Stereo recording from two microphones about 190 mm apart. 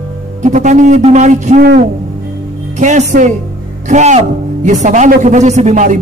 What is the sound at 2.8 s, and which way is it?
Speech, 40° right (ahead or behind).